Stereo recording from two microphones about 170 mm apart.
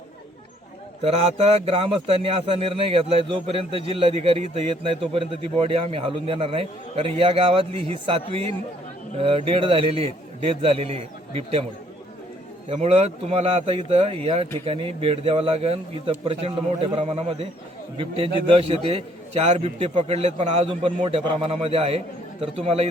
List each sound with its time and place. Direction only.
1.0 s a man's voice: 35° right (ahead or behind)
12.6 s a man's voice: 40° right (ahead or behind)